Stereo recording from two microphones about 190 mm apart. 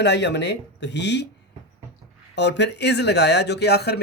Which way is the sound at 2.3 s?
65° left (ahead or behind).